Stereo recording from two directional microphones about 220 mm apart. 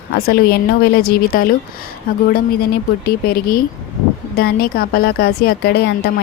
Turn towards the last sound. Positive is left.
turn(degrees=50)  # may be behind; listen again after turning